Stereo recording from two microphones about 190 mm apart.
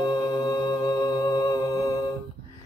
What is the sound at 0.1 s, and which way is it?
Humming, 20° left (ahead or behind).